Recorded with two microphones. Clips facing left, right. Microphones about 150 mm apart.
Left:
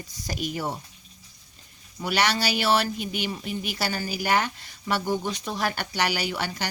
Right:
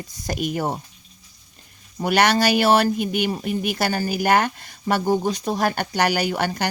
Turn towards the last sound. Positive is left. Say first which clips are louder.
# right 7 dB
turn(degrees=-50)  # may be behind; listen again after turning